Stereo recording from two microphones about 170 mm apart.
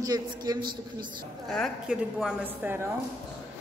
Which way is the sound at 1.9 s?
5° right (ahead or behind).